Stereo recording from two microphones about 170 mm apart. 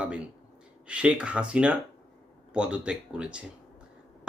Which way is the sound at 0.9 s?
5° right (ahead or behind).